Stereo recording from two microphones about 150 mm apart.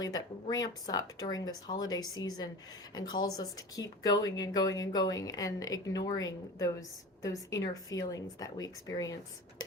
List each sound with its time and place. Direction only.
0.0 s speech: 25° left (ahead or behind)